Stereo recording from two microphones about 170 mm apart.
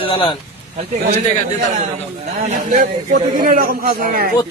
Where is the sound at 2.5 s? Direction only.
55° right (ahead or behind).